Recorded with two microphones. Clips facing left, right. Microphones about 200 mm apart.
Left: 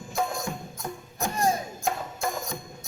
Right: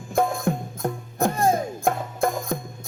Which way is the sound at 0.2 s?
55° right (ahead or behind).